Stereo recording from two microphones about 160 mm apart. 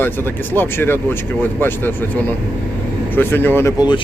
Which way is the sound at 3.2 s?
15° left (ahead or behind).